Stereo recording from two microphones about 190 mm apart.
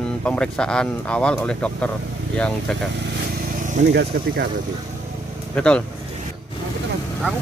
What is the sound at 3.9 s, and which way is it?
Speech, 60° right (ahead or behind).